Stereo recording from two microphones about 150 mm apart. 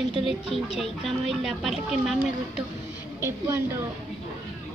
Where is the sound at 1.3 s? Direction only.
Centre (ahead or behind).